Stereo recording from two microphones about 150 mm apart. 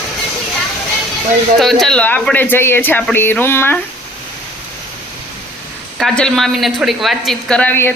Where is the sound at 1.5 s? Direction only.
Centre (ahead or behind).